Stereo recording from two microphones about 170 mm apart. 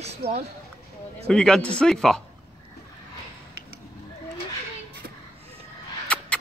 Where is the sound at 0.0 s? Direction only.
40° right (ahead or behind).